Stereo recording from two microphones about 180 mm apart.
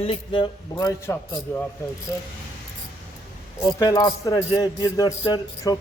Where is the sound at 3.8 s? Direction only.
20° left (ahead or behind).